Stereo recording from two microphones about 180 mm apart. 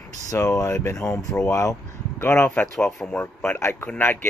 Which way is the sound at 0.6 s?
15° left (ahead or behind).